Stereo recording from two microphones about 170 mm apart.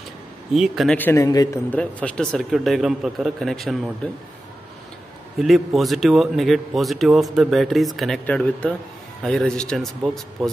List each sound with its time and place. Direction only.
0.6 s a man's voice: centre (ahead or behind)
0.9 s a man's voice: 15° left (ahead or behind)
1.7 s a man's voice: 5° left (ahead or behind)
5.4 s a man's voice: centre (ahead or behind)